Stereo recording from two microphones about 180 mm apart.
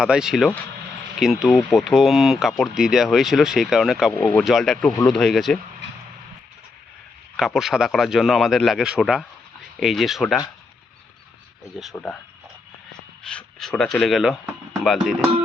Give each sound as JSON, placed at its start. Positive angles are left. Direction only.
{"t": 0.0, "sound": "speech", "side_deg": -5}
{"t": 4.1, "sound": "speech", "side_deg": 10}
{"t": 7.3, "sound": "speech", "side_deg": 0}
{"t": 11.8, "sound": "speech", "side_deg": 5}
{"t": 13.2, "sound": "speech", "side_deg": 5}